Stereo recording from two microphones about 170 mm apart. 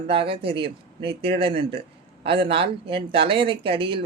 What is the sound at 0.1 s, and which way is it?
Speech, 30° right (ahead or behind).